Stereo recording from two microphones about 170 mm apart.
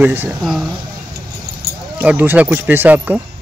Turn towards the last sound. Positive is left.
turn(degrees=-10)  # may be behind; listen again after turning